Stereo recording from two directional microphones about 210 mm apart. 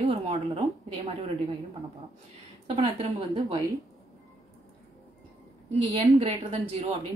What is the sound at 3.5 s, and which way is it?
Speech, 15° right (ahead or behind).